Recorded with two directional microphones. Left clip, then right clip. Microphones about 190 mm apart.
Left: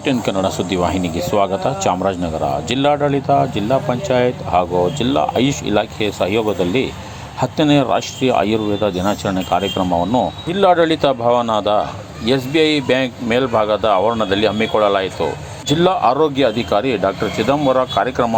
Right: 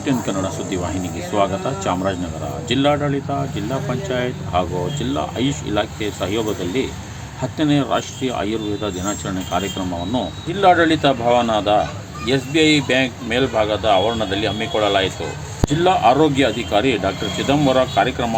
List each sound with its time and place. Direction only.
0.0 s speech: 20° left (ahead or behind)